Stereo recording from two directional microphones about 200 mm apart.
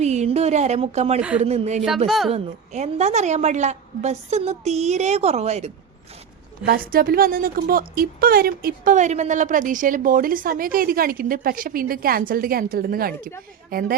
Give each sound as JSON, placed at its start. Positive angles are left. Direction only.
{"t": 0.0, "sound": "a woman's voice", "side_deg": -35}
{"t": 2.0, "sound": "a woman's voice", "side_deg": 0}
{"t": 2.3, "sound": "a woman's voice", "side_deg": -35}
{"t": 6.7, "sound": "a woman's voice", "side_deg": -45}